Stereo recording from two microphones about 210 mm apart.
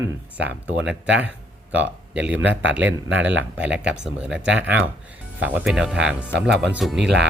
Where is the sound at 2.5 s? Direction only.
60° right (ahead or behind).